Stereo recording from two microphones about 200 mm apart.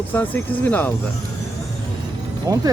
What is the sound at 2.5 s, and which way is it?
Speech, 15° right (ahead or behind).